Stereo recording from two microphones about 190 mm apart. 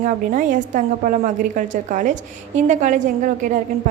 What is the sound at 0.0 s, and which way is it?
A woman's voice, 45° right (ahead or behind).